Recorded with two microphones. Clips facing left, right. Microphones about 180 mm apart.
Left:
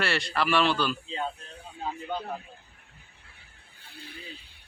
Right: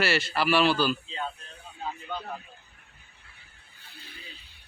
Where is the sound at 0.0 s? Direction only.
5° right (ahead or behind).